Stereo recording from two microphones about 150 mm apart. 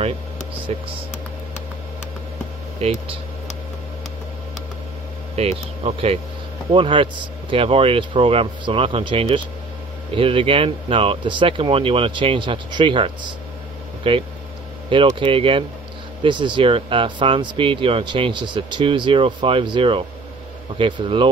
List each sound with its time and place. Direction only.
0.7 s speech: 40° right (ahead or behind)
2.8 s speech: 45° right (ahead or behind)
5.3 s speech: 45° right (ahead or behind)